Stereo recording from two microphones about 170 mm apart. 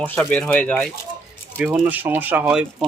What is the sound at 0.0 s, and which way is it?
Speech, 10° left (ahead or behind).